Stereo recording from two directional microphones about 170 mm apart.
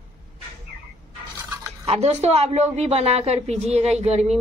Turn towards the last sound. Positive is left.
turn(degrees=-40)  # may be behind; listen again after turning